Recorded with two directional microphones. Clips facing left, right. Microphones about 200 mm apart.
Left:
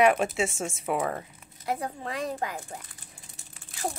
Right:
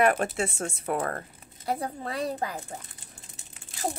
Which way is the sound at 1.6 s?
35° right (ahead or behind).